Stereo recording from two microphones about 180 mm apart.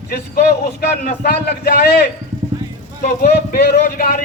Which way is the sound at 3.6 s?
60° left (ahead or behind).